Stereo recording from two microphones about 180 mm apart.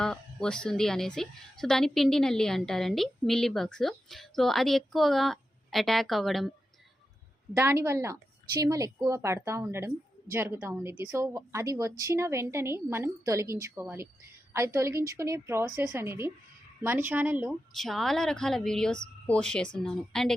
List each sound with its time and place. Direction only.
0.0 s a woman's voice: 5° left (ahead or behind)
7.5 s a woman's voice: 15° right (ahead or behind)
17.7 s a woman's voice: centre (ahead or behind)